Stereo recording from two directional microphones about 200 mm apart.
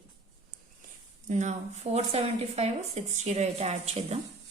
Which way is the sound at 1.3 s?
35° right (ahead or behind).